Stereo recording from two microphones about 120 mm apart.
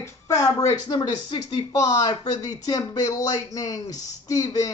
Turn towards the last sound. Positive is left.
turn(degrees=30)  # may be behind; listen again after turning